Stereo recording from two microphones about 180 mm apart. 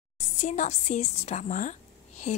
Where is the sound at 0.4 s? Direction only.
40° left (ahead or behind).